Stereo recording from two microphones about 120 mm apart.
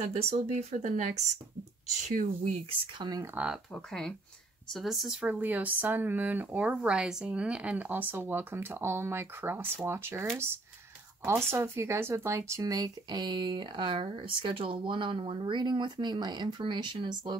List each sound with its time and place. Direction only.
0.0 s speech: 60° right (ahead or behind); by 2.5 s 90° right
3.0 s speech: 30° right (ahead or behind)
3.7 s speech: 5° left (ahead or behind)
5.2 s speech: 15° right (ahead or behind); by 17.4 s 40° right (ahead or behind)